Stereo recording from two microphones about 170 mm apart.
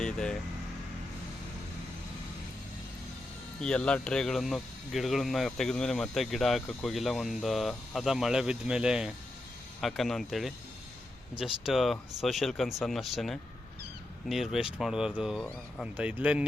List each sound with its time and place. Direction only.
0.0 s vehicle: 5° left (ahead or behind)
3.6 s speech: 5° left (ahead or behind)